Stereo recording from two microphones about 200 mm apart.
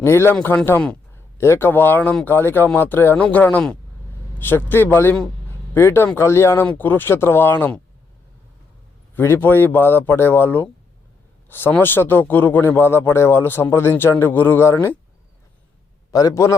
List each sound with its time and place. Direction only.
0.0 s a man's voice: 10° left (ahead or behind)
9.1 s a man's voice: 10° left (ahead or behind)
16.1 s a man's voice: 15° left (ahead or behind)